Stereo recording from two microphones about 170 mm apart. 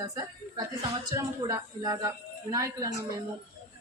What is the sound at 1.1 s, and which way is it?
A woman's voice, 20° right (ahead or behind).